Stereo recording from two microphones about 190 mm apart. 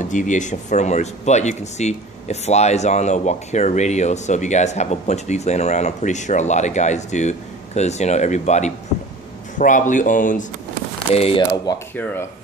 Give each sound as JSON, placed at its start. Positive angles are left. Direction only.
{"t": 0.0, "sound": "speech", "side_deg": 40}
{"t": 11.0, "sound": "speech", "side_deg": 30}
{"t": 11.9, "sound": "speech", "side_deg": 10}